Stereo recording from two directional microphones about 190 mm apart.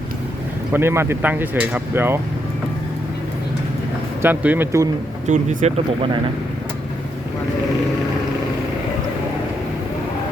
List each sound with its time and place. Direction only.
0.7 s speech: 10° right (ahead or behind)
4.2 s speech: 10° right (ahead or behind)
5.3 s speech: 40° right (ahead or behind)